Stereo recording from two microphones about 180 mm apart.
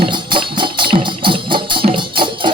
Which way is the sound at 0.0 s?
25° right (ahead or behind).